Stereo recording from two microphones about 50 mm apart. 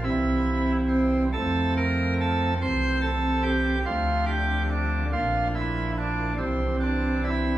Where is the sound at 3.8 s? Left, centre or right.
Centre.